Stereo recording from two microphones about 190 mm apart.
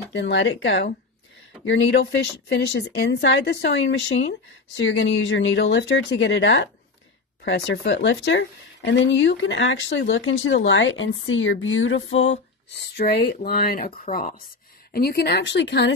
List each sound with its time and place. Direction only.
0.1 s speech: 70° left (ahead or behind)
1.7 s speech: 65° left (ahead or behind)